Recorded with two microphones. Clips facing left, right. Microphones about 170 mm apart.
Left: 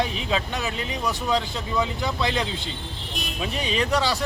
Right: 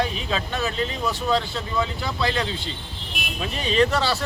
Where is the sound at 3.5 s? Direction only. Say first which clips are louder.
Right 4 dB; 15° left (ahead or behind).